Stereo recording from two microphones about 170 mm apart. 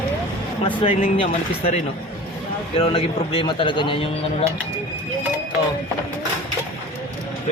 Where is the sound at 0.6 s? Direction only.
30° left (ahead or behind).